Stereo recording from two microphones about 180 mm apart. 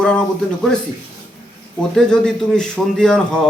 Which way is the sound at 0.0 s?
5° left (ahead or behind).